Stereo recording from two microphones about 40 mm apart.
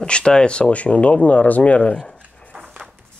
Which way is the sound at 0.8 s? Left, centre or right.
Left.